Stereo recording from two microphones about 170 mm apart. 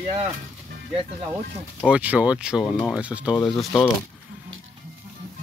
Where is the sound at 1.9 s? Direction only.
10° right (ahead or behind).